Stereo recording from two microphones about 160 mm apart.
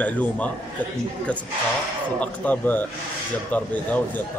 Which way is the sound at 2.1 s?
10° left (ahead or behind).